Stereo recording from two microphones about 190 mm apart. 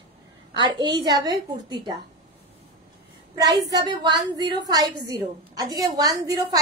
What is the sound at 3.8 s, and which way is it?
A woman's voice, 25° right (ahead or behind).